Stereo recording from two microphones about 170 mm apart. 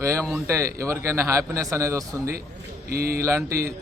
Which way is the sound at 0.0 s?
15° right (ahead or behind).